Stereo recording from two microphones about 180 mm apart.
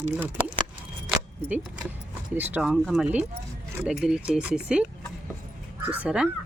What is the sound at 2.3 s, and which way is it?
Speech, 10° right (ahead or behind).